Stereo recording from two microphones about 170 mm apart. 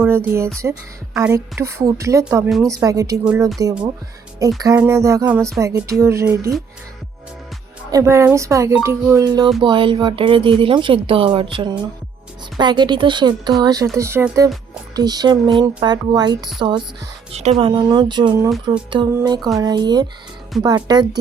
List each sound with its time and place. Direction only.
0.0 s speech: 10° right (ahead or behind)
7.9 s speech: 20° right (ahead or behind)